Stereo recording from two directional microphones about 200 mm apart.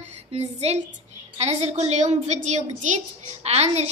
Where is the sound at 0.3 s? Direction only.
30° right (ahead or behind).